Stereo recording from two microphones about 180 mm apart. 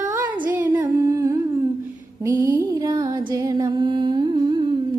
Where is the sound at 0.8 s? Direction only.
20° right (ahead or behind).